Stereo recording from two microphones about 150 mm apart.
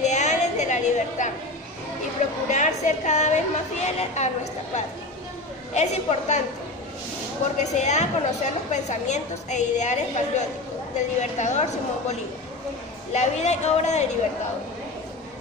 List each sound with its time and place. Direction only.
0.0 s a sound: 50° left (ahead or behind)
2.5 s a woman's voice: 55° left (ahead or behind)
5.8 s a woman's voice: 50° left (ahead or behind)
7.7 s a woman's voice: 50° left (ahead or behind)